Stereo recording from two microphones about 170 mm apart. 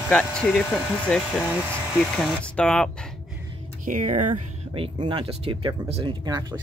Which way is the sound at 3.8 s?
50° right (ahead or behind).